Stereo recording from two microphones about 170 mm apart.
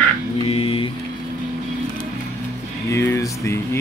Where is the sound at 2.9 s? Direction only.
15° left (ahead or behind).